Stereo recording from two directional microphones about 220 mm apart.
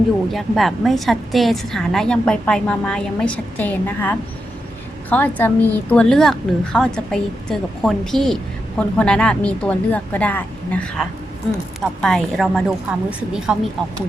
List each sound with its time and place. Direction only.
0.3 s a woman's voice: centre (ahead or behind)
12.0 s a woman's voice: 5° left (ahead or behind)